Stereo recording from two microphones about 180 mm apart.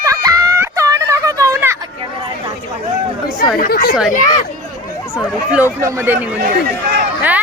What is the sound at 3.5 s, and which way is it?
Speech, 55° left (ahead or behind).